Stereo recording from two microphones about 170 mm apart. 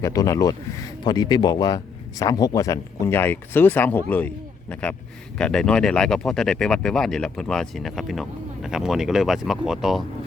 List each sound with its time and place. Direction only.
0.0 s speech: 20° left (ahead or behind); by 10.0 s centre (ahead or behind)